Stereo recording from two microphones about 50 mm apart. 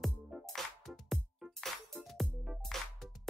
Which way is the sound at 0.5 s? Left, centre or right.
Centre.